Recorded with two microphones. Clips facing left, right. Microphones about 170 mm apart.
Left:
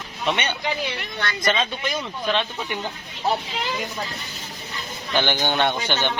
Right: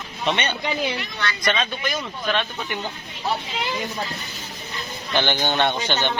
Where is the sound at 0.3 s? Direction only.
10° left (ahead or behind).